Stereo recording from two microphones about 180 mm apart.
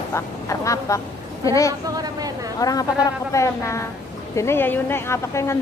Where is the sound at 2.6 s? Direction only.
20° left (ahead or behind).